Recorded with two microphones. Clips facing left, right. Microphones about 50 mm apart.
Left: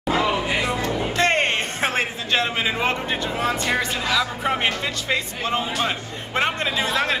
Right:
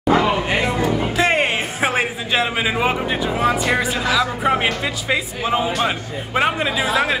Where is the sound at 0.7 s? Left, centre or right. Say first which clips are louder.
Right 4 dB; centre.